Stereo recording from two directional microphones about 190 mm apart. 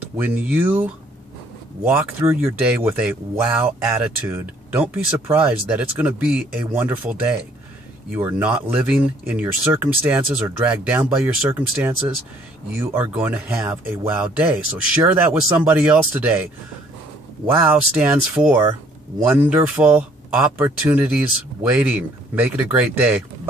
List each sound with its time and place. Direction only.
0.2 s speech: 5° right (ahead or behind)
17.6 s speech: 10° right (ahead or behind)